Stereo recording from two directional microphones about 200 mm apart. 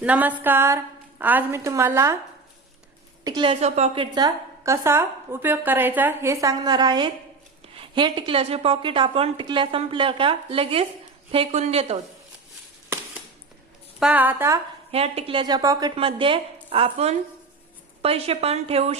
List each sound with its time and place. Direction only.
0.0 s a woman's voice: 5° right (ahead or behind)
3.2 s a woman's voice: 25° right (ahead or behind)
14.0 s a woman's voice: 5° right (ahead or behind)
14.9 s a woman's voice: 30° right (ahead or behind)